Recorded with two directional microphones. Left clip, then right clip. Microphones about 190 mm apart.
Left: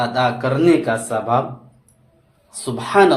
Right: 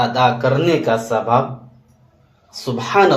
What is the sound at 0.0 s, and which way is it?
Speech, 35° left (ahead or behind).